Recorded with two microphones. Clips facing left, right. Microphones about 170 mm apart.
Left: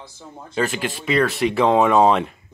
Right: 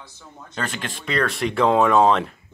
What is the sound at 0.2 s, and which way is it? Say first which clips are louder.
Speech: left 6 dB; 30° left (ahead or behind).